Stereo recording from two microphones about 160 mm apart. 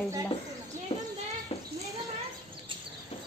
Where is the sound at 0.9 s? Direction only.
40° left (ahead or behind).